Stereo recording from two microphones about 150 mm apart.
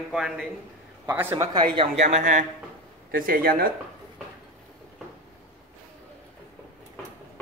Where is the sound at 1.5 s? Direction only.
30° right (ahead or behind).